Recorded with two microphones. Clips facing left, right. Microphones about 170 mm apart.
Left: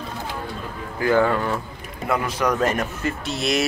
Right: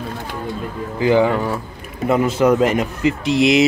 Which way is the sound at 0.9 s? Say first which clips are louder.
Right 4 dB; 15° right (ahead or behind).